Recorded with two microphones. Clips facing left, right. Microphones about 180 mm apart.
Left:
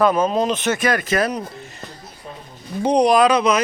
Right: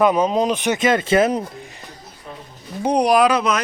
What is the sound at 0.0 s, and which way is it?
Speech, 15° right (ahead or behind).